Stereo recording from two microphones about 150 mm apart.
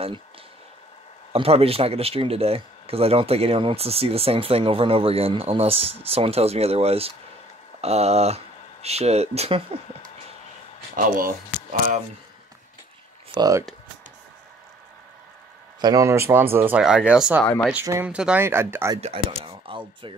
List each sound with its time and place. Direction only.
1.3 s speech: 40° right (ahead or behind)
11.0 s speech: 70° right (ahead or behind)
13.3 s speech: 25° right (ahead or behind)
15.8 s speech: 25° right (ahead or behind)
18.9 s speech: 40° right (ahead or behind)